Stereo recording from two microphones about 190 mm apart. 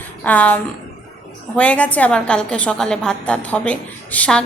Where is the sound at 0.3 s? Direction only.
10° left (ahead or behind).